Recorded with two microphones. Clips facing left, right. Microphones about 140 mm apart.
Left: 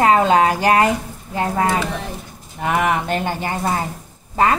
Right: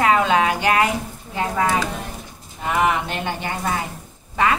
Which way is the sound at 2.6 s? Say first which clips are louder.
Left 1 dB; 55° left (ahead or behind).